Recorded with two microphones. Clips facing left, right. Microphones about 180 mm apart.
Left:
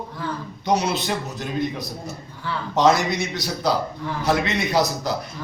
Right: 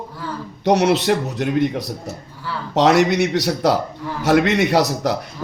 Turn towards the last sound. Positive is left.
turn(degrees=-70)  # may be behind; listen again after turning